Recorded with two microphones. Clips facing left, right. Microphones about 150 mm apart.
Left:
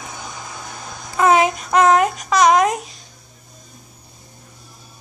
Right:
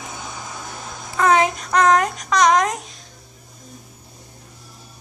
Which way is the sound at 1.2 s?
10° left (ahead or behind).